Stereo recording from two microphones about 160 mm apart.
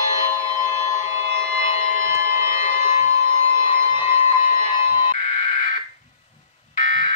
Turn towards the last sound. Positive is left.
turn(degrees=55)  # may be behind; listen again after turning